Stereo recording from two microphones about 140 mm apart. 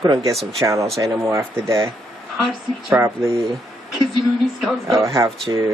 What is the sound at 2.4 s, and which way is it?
Speech, 5° right (ahead or behind).